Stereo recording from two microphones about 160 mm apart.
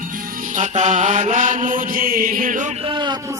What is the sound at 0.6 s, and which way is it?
Mantra, 50° right (ahead or behind).